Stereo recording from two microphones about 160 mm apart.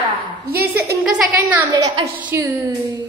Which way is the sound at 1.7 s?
25° right (ahead or behind).